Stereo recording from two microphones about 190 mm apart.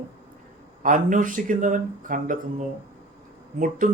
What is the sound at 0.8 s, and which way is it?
Speech, 45° right (ahead or behind).